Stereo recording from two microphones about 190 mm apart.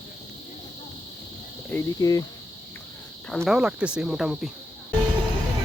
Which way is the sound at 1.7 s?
20° left (ahead or behind).